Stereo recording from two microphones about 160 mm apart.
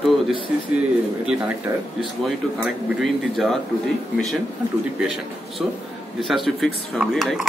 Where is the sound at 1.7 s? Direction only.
20° right (ahead or behind).